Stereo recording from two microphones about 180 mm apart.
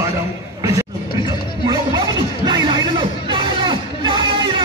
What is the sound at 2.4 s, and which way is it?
Music, 25° right (ahead or behind).